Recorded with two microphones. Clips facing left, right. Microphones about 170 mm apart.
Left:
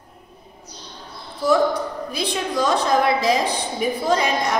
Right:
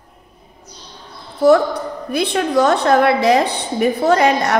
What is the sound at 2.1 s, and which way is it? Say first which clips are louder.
A woman's voice: right 11 dB; 60° right (ahead or behind).